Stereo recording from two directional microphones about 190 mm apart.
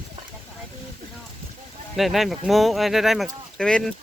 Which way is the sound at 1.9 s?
Centre (ahead or behind).